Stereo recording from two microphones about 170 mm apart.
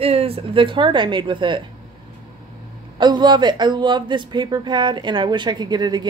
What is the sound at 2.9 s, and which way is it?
A woman's voice, 25° right (ahead or behind).